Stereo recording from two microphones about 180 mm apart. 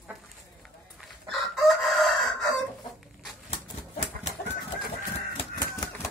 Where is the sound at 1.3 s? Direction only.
Centre (ahead or behind).